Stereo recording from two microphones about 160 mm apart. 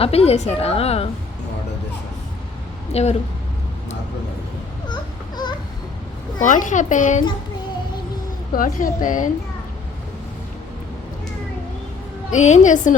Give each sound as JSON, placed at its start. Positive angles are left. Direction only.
{"t": 0.0, "sound": "a woman's voice", "side_deg": 40}
{"t": 2.9, "sound": "speech", "side_deg": 45}
{"t": 6.4, "sound": "a child's voice", "side_deg": 55}
{"t": 8.5, "sound": "a woman's voice", "side_deg": 55}
{"t": 12.3, "sound": "a child's voice", "side_deg": 50}